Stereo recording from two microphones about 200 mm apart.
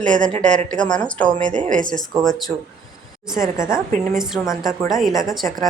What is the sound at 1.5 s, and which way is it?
Speech, 40° right (ahead or behind).